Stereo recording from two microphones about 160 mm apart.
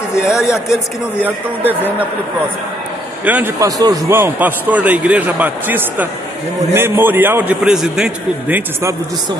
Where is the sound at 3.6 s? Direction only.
20° right (ahead or behind).